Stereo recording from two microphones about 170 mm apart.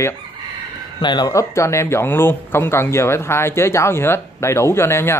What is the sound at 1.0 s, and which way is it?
Speech, 25° left (ahead or behind).